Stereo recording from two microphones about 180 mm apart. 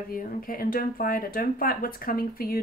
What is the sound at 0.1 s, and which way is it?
Speech, 55° left (ahead or behind).